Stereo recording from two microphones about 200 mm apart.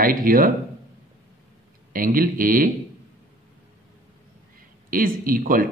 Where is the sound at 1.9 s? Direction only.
45° right (ahead or behind).